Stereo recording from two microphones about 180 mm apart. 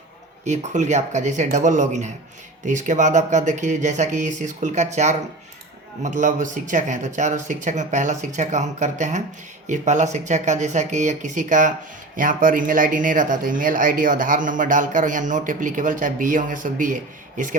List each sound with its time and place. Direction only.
0.4 s speech: 40° right (ahead or behind)